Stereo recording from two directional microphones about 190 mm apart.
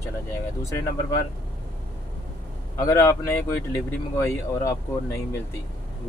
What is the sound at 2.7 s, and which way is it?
Speech, 15° left (ahead or behind).